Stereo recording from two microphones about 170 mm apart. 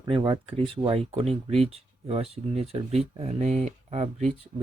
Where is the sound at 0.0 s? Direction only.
30° right (ahead or behind).